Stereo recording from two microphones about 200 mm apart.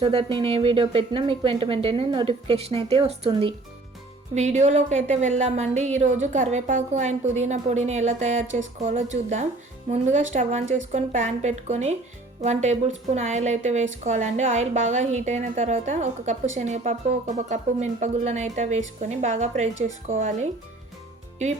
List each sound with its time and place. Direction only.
0.0 s a woman's voice: 25° right (ahead or behind)